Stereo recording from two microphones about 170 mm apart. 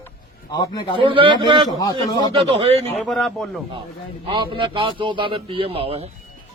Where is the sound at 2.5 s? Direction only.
35° right (ahead or behind).